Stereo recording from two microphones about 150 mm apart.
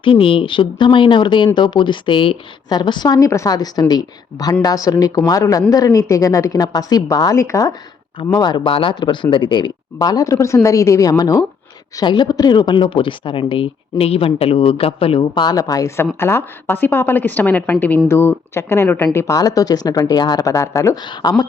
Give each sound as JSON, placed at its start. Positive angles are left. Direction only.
{"t": 0.0, "sound": "a woman's voice", "side_deg": 35}